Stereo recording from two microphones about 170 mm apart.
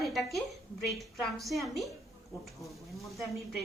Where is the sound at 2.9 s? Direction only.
Centre (ahead or behind).